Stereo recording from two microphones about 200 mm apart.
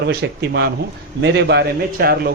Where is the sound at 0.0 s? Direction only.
55° right (ahead or behind).